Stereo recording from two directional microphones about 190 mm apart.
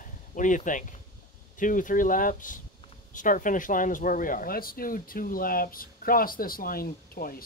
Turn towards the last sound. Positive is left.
turn(degrees=50)  # may be behind; listen again after turning